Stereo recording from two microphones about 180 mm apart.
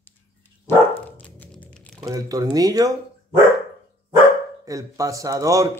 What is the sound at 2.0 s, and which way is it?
Speech, 20° right (ahead or behind).